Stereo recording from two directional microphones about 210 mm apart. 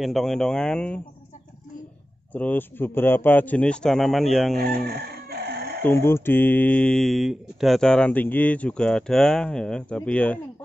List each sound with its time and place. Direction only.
0.0 s speech: centre (ahead or behind)
2.3 s a man's voice: 10° left (ahead or behind)
4.8 s chicken: 50° right (ahead or behind)
5.8 s speech: 10° left (ahead or behind)